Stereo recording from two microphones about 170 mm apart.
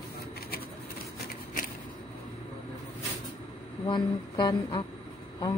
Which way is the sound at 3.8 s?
25° left (ahead or behind).